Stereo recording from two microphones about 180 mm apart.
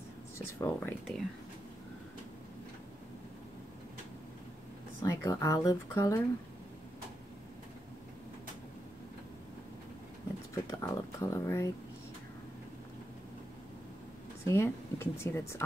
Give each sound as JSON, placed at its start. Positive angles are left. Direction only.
{"t": 0.6, "sound": "speech", "side_deg": 10}
{"t": 5.0, "sound": "speech", "side_deg": 15}
{"t": 10.5, "sound": "speech", "side_deg": 15}
{"t": 14.4, "sound": "speech", "side_deg": 15}